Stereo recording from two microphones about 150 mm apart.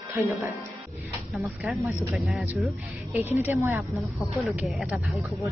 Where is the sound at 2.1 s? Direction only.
5° right (ahead or behind).